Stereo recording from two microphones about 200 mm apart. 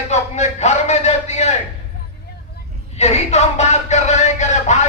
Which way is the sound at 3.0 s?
35° left (ahead or behind).